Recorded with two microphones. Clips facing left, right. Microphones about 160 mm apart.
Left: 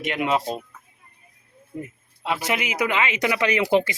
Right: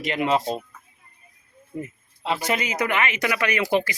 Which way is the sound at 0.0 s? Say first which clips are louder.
Right 1 dB; 5° left (ahead or behind).